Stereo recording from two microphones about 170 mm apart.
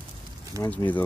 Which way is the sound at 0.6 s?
10° left (ahead or behind).